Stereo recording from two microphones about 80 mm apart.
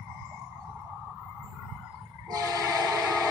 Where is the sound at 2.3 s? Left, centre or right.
Right.